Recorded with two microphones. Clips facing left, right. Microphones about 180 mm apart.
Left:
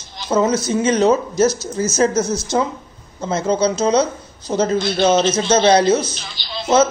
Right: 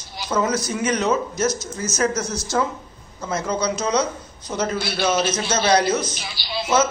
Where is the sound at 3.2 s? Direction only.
25° left (ahead or behind).